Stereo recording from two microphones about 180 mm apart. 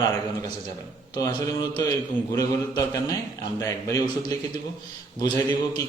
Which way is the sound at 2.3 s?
20° left (ahead or behind).